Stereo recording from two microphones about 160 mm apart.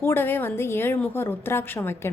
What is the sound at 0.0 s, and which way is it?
Speech, 15° left (ahead or behind).